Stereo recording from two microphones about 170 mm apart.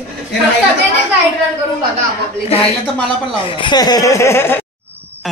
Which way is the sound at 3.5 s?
30° left (ahead or behind).